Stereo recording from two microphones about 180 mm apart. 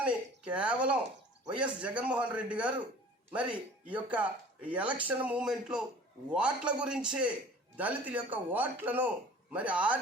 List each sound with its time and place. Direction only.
0.0 s a man's voice: 5° right (ahead or behind)